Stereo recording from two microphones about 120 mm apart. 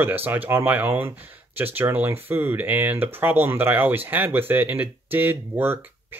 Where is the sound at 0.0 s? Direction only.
15° right (ahead or behind).